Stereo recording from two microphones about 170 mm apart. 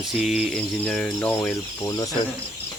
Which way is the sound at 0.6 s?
10° left (ahead or behind).